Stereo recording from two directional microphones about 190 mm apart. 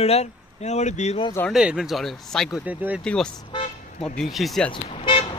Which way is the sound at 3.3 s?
25° left (ahead or behind).